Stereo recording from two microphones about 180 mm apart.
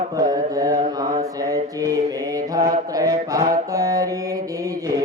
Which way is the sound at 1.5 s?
20° right (ahead or behind).